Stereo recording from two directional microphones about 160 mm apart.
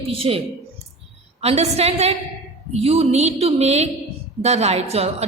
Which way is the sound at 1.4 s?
40° right (ahead or behind).